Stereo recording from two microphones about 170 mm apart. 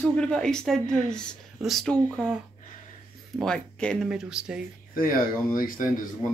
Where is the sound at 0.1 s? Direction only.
5° left (ahead or behind).